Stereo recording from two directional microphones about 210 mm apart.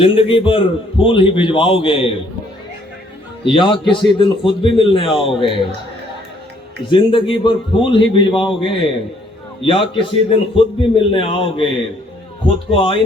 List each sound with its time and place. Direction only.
0.0 s a man's voice: 25° left (ahead or behind)
3.4 s a man's voice: 25° left (ahead or behind)
6.9 s a man's voice: 25° left (ahead or behind)